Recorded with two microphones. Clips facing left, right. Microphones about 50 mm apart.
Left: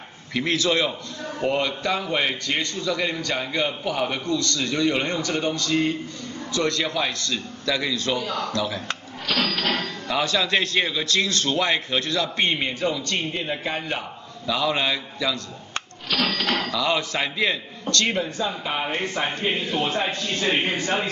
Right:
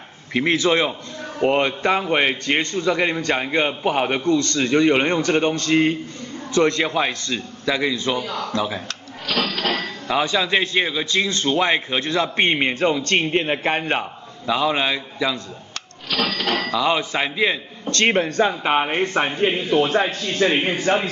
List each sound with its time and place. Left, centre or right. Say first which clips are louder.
0.3 s a man's voice: right 4 dB; right
9.3 s a sound: right 1 dB; centre
9.8 s speech: right 3 dB; centre; by 14.0 s right
14.4 s speech: right 3 dB; right
16.1 s a sound: right 1 dB; centre
16.4 s speech: right 3 dB; right
17.8 s a man's voice: right 5 dB; right
20.4 s speech: right 6 dB; right
20.9 s a man's voice: right 8 dB; right